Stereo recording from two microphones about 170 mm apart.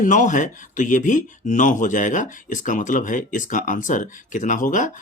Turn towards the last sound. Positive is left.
turn(degrees=50)  # may be behind; listen again after turning